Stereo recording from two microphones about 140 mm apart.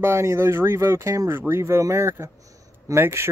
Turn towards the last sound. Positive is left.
turn(degrees=-15)  # may be behind; listen again after turning